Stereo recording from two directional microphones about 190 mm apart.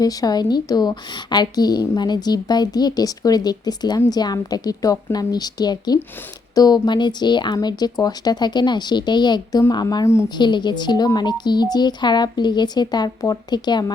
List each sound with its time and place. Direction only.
0.0 s speech: 20° left (ahead or behind)